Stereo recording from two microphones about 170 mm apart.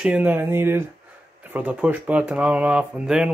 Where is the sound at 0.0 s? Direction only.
10° right (ahead or behind).